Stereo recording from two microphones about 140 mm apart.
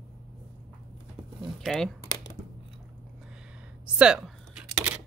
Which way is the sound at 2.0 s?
30° left (ahead or behind).